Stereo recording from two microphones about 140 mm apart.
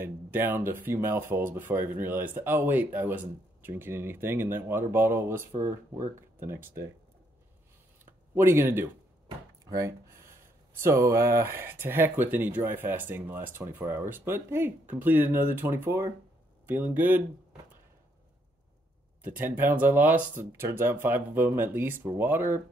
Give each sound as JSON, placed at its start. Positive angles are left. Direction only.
{"t": 0.0, "sound": "speech", "side_deg": -15}
{"t": 5.5, "sound": "speech", "side_deg": -65}
{"t": 6.4, "sound": "speech", "side_deg": -15}
{"t": 8.4, "sound": "speech", "side_deg": -15}
{"t": 19.2, "sound": "speech", "side_deg": -15}